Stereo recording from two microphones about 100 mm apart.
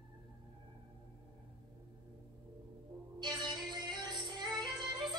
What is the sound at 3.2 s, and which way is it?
Music, 45° right (ahead or behind).